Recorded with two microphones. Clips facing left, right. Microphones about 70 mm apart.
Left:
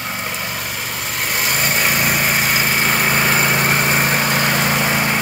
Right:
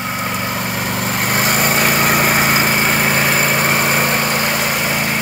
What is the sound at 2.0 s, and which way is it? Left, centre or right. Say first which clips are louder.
Vehicle: right 4 dB; right.